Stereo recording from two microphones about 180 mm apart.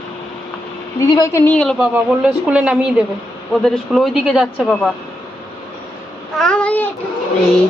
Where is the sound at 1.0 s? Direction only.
15° left (ahead or behind).